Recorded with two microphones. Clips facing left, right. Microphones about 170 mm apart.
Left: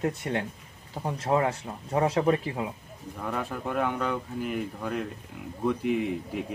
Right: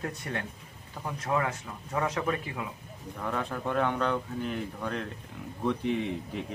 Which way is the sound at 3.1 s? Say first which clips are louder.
Left 1 dB; 5° left (ahead or behind).